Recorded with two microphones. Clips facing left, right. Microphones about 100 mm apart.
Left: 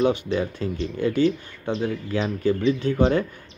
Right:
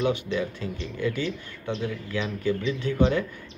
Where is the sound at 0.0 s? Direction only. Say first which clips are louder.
Left 4 dB; 40° left (ahead or behind).